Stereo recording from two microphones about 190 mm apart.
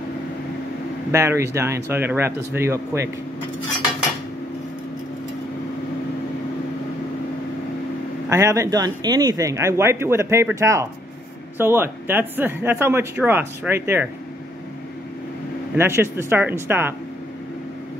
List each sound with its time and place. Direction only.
1.1 s speech: 15° right (ahead or behind)
8.3 s speech: 15° right (ahead or behind)
15.8 s speech: 15° right (ahead or behind)